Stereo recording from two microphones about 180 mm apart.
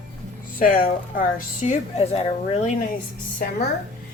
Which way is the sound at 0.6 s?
50° left (ahead or behind).